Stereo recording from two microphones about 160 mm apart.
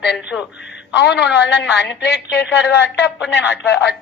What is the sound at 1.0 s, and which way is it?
A woman's voice, 90° left.